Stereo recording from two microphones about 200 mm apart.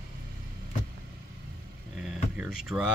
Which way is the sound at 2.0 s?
5° right (ahead or behind).